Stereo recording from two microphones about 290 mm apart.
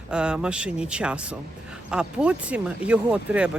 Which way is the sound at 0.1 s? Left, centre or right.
Centre.